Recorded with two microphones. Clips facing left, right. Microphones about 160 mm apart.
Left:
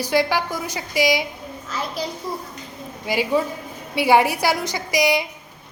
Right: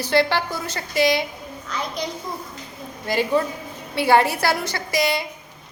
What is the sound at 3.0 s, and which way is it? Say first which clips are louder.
Speech: even; 10° left (ahead or behind).